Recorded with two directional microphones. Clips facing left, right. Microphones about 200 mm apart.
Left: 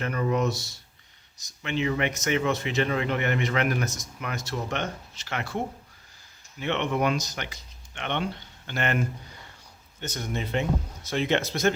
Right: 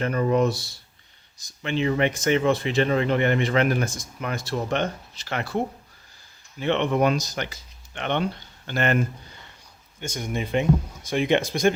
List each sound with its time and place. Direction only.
0.0 s speech: 35° right (ahead or behind)
6.6 s speech: 35° right (ahead or behind)
10.0 s speech: 10° right (ahead or behind)